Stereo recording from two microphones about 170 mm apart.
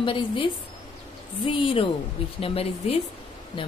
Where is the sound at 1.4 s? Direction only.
30° left (ahead or behind).